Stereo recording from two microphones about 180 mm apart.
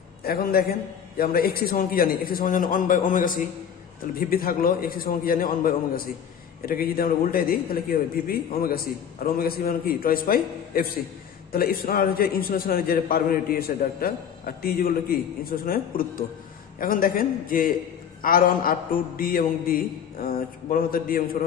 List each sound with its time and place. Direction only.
0.2 s a man's voice: 55° left (ahead or behind)